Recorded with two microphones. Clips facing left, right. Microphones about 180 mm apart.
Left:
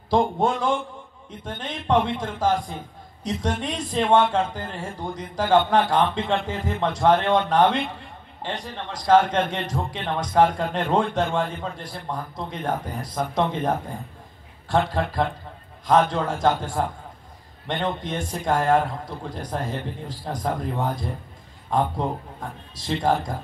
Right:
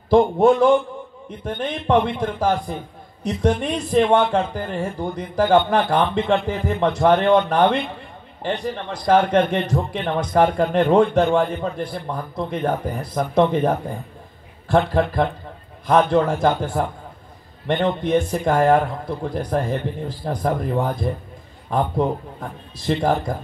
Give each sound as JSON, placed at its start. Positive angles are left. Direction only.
{"t": 0.1, "sound": "a man's voice", "side_deg": -60}